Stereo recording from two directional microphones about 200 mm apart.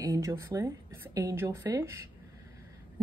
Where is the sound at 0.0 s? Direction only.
15° right (ahead or behind).